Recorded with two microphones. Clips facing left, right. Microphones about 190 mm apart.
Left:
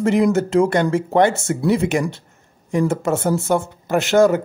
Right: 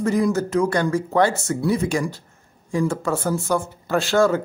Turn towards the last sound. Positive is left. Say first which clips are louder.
# left 4 dB
turn(degrees=20)  # may be behind; listen again after turning